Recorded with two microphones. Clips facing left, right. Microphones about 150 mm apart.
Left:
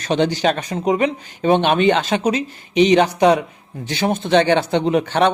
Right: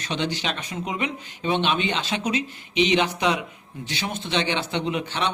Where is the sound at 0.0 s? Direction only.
45° left (ahead or behind).